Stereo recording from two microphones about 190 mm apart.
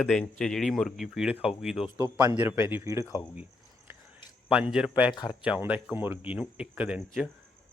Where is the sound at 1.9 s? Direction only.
15° right (ahead or behind).